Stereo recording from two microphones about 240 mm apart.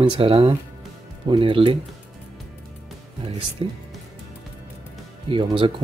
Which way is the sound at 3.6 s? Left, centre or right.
Right.